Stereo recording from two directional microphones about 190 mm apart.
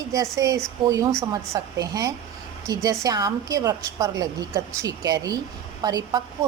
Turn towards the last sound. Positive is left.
turn(degrees=-20)  # may be behind; listen again after turning